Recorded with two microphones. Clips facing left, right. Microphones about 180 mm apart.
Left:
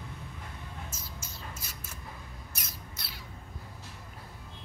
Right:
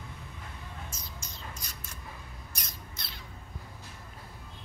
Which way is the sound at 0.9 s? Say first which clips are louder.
Left 1 dB; 5° left (ahead or behind).